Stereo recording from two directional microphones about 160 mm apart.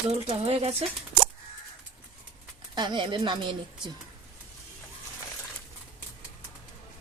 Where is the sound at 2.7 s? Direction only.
30° right (ahead or behind).